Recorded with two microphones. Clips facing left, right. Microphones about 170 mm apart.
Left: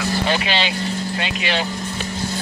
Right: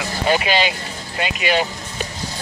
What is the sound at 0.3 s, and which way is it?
Speech, 10° right (ahead or behind).